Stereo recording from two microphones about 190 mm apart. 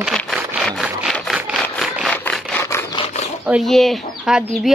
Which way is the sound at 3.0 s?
35° left (ahead or behind).